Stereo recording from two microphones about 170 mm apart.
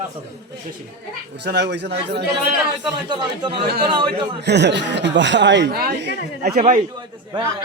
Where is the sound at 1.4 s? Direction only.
80° right.